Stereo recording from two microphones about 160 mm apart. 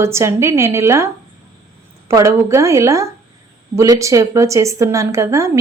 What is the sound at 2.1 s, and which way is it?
Speech, 20° right (ahead or behind).